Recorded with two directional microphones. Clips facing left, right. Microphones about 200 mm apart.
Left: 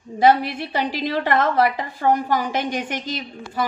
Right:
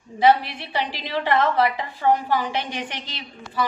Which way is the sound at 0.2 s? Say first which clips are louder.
Left 2 dB; 45° left (ahead or behind).